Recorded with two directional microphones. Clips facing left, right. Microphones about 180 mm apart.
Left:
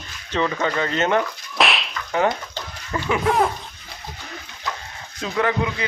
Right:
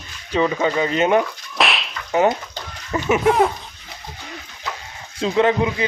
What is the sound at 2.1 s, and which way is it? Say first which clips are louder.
Speech: right 4 dB; 20° right (ahead or behind).